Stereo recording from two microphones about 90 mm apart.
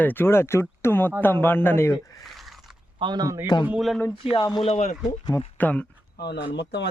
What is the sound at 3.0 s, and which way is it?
Speech, 55° right (ahead or behind).